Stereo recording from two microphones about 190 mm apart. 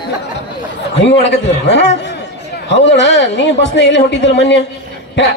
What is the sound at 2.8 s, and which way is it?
A man's voice, 70° left (ahead or behind).